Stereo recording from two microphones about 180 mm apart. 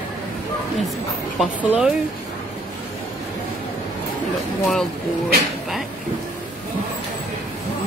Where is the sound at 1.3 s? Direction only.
5° right (ahead or behind).